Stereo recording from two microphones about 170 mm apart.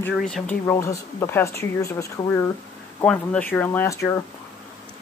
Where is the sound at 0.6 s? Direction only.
15° left (ahead or behind).